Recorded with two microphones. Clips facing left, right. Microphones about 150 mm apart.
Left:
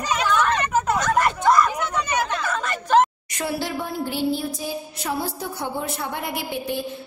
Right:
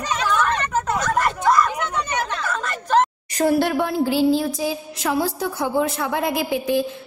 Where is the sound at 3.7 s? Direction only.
90° right.